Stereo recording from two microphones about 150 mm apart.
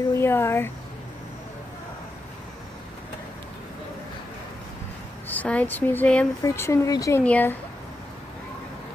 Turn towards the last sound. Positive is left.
turn(degrees=10)  # may be behind; listen again after turning